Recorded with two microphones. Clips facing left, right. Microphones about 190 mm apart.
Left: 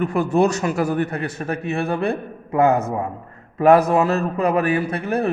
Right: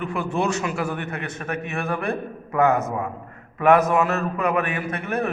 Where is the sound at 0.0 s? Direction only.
40° left (ahead or behind).